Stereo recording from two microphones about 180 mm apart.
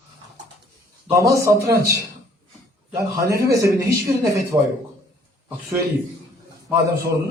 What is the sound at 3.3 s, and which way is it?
A man's voice, 15° right (ahead or behind).